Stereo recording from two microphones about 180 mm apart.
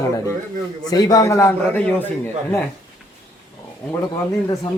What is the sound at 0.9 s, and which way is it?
A man's voice, 20° left (ahead or behind).